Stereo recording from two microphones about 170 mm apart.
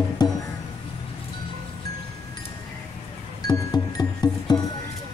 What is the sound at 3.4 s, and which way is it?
Music, 25° left (ahead or behind).